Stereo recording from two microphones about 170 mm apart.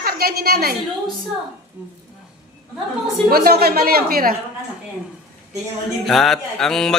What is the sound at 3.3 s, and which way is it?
A woman's voice, 65° right (ahead or behind).